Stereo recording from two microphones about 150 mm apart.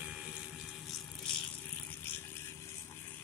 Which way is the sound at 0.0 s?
5° right (ahead or behind).